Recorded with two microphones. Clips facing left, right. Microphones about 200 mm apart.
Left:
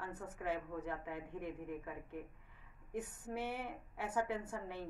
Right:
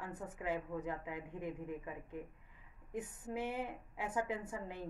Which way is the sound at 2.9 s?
15° right (ahead or behind).